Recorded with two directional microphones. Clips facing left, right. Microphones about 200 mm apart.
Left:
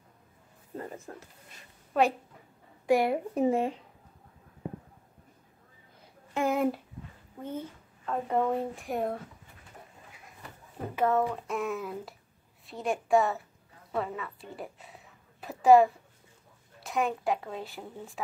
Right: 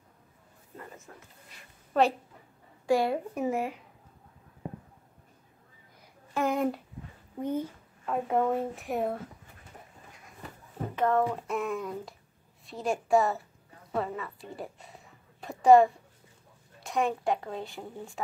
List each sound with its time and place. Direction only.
0.7 s speech: 35° left (ahead or behind)
2.0 s a woman's voice: 10° left (ahead or behind)
2.9 s a woman's voice: 20° left (ahead or behind)
3.3 s speech: 30° left (ahead or behind)
6.4 s a sound: 5° left (ahead or behind)
7.4 s speech: 10° right (ahead or behind)
11.0 s speech: 5° left (ahead or behind)
15.4 s a sound: 5° left (ahead or behind)
16.8 s speech: centre (ahead or behind)